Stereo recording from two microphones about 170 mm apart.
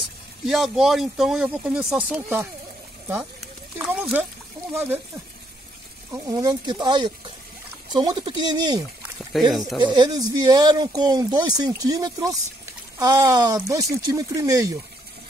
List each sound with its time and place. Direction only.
0.5 s speech: centre (ahead or behind)
3.7 s speech: 10° right (ahead or behind)
6.1 s speech: 20° right (ahead or behind)
9.5 s speech: centre (ahead or behind)
9.8 s speech: 25° right (ahead or behind)